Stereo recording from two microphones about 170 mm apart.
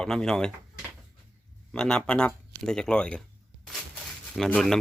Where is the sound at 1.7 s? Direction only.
5° left (ahead or behind).